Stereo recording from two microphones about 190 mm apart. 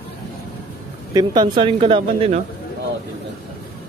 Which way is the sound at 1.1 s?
20° right (ahead or behind).